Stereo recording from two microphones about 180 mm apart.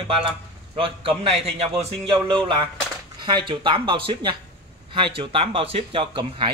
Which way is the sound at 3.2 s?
25° right (ahead or behind).